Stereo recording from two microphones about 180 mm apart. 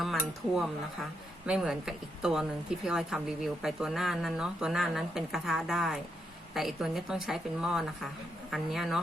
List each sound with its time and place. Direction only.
0.0 s a woman's voice: centre (ahead or behind)